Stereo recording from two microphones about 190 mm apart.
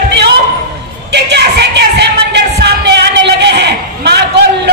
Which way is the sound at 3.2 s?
65° right (ahead or behind).